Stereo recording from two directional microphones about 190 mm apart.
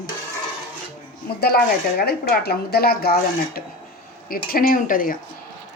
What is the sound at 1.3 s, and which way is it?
Speech, 55° left (ahead or behind).